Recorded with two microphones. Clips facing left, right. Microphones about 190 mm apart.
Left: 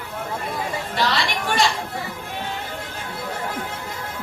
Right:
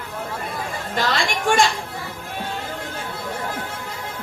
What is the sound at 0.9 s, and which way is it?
Speech, 50° right (ahead or behind).